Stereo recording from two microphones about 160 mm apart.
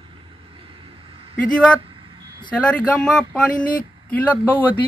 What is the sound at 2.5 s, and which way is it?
Speech, 5° left (ahead or behind).